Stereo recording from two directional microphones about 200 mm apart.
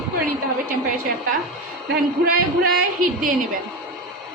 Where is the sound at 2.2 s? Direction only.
45° right (ahead or behind).